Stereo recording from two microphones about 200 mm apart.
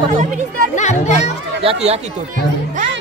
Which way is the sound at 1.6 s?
30° right (ahead or behind).